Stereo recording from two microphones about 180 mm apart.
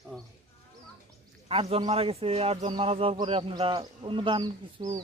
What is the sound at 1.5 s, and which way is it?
A man's voice, 30° right (ahead or behind).